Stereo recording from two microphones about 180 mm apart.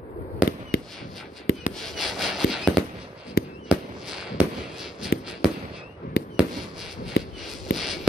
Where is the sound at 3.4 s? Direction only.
60° left (ahead or behind).